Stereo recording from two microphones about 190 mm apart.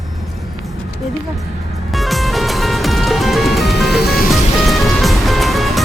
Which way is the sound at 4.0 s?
55° left (ahead or behind).